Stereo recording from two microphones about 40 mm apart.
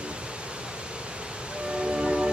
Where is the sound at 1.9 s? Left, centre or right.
Right.